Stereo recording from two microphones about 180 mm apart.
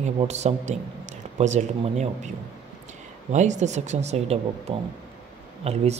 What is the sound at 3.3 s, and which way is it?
Speech, 40° right (ahead or behind).